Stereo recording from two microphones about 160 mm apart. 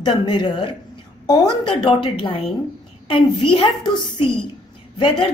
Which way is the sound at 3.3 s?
30° left (ahead or behind).